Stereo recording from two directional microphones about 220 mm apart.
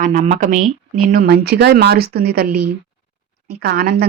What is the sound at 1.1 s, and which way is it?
Speech, 45° right (ahead or behind).